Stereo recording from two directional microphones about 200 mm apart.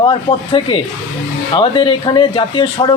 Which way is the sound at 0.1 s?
25° left (ahead or behind).